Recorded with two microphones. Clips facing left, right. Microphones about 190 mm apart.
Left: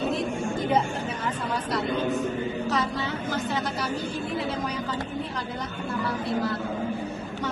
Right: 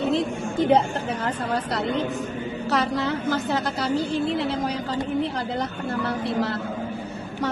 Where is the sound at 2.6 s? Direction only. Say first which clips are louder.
Right 4 dB; 70° right (ahead or behind).